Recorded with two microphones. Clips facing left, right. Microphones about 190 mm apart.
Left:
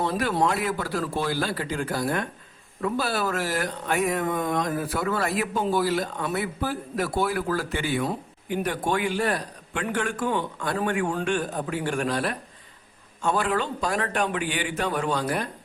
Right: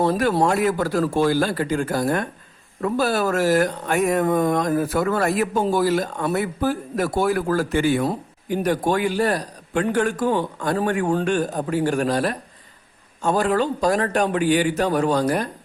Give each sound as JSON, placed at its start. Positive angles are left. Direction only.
{"t": 0.0, "sound": "a man's voice", "side_deg": -45}